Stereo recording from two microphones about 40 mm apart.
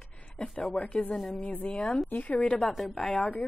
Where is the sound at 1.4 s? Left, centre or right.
Left.